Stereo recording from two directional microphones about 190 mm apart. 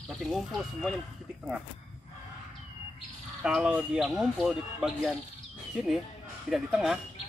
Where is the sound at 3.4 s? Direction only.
5° right (ahead or behind).